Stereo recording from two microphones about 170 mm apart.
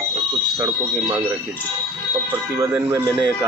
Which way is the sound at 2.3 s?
15° right (ahead or behind).